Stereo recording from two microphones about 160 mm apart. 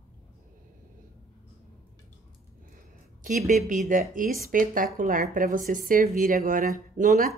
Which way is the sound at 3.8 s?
55° right (ahead or behind).